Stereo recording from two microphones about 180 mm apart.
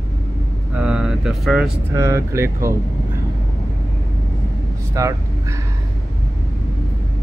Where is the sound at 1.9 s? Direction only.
15° right (ahead or behind).